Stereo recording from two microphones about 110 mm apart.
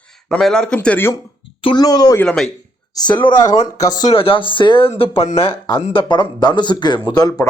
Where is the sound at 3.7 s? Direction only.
35° left (ahead or behind).